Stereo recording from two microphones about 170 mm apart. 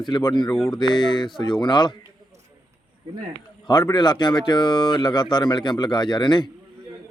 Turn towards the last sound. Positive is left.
turn(degrees=25)  # may be behind; listen again after turning